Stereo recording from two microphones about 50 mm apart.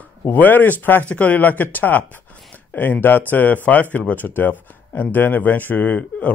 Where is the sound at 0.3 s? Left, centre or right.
Left.